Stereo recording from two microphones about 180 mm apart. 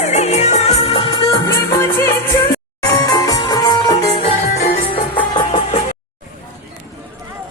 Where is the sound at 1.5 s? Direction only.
15° left (ahead or behind).